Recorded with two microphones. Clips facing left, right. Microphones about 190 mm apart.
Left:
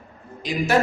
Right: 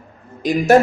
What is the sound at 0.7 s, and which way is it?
Speech, 45° right (ahead or behind).